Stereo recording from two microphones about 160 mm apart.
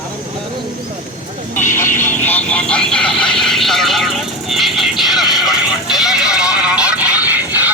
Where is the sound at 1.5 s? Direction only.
50° left (ahead or behind).